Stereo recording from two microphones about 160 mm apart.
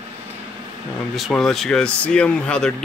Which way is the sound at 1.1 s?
Centre (ahead or behind).